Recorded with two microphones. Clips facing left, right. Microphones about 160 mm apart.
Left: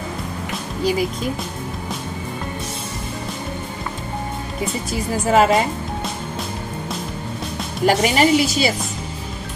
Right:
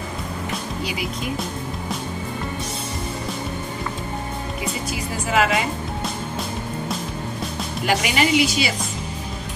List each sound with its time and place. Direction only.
5.3 s a woman's voice: 35° left (ahead or behind)
7.8 s a woman's voice: 40° left (ahead or behind)